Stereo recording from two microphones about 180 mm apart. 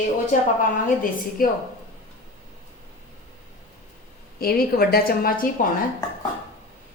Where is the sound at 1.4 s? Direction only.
50° left (ahead or behind).